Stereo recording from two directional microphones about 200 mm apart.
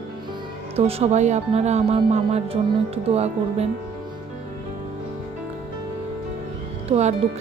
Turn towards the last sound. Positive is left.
turn(degrees=-35)  # may be behind; listen again after turning